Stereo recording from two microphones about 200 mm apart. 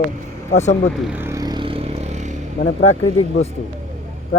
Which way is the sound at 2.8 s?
90° left.